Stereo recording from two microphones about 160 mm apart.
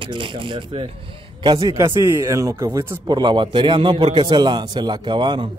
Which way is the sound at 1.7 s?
20° right (ahead or behind).